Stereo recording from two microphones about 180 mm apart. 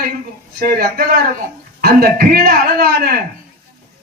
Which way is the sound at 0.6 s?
55° right (ahead or behind).